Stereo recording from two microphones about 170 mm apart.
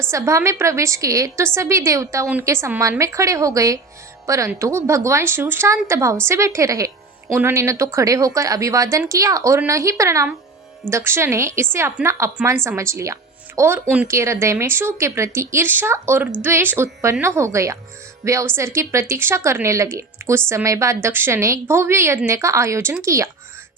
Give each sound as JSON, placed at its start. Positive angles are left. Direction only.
{"t": 0.1, "sound": "a woman's voice", "side_deg": -15}
{"t": 14.1, "sound": "a woman's voice", "side_deg": -15}